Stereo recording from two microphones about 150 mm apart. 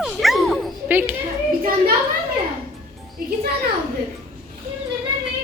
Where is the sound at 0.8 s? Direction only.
15° right (ahead or behind).